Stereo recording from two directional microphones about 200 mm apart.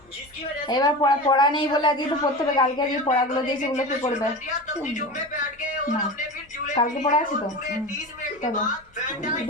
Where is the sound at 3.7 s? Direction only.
35° left (ahead or behind).